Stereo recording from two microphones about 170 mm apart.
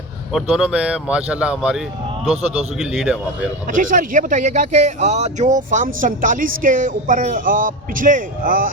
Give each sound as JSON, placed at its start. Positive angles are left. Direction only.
{"t": 0.3, "sound": "speech", "side_deg": -5}
{"t": 3.7, "sound": "speech", "side_deg": -50}